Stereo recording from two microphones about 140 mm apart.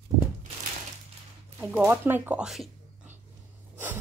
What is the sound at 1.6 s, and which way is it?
Speech, 15° right (ahead or behind).